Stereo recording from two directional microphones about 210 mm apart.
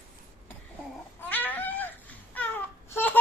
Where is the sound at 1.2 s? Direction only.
10° left (ahead or behind).